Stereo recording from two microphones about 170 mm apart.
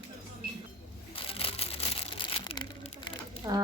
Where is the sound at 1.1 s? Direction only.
35° left (ahead or behind).